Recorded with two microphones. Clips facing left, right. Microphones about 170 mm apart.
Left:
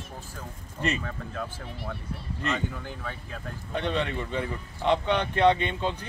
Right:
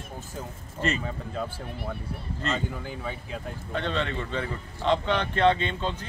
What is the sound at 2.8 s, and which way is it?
Speech, 10° right (ahead or behind).